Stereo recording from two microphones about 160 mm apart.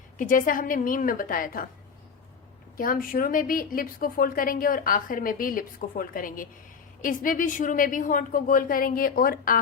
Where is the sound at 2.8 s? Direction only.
60° left (ahead or behind).